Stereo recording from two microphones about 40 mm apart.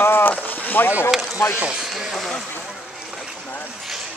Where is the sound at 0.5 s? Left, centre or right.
Left.